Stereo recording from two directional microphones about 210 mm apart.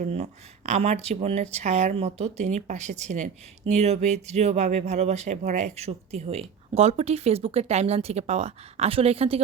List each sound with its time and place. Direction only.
0.0 s speech: 35° right (ahead or behind)